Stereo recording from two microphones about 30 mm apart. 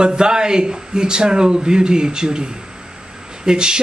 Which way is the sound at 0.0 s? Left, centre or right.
Right.